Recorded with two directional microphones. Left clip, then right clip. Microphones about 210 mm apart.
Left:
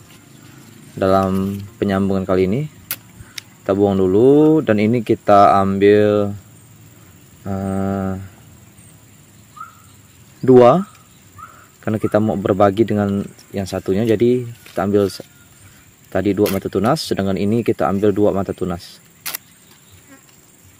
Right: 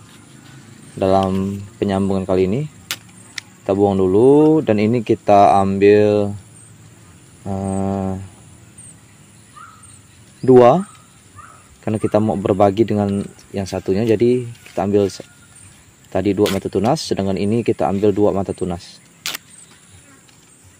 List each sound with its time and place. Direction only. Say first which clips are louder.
0.9 s speech: even; 10° left (ahead or behind)
7.4 s foghorn: even; 10° left (ahead or behind)
10.4 s speech: even; 10° left (ahead or behind)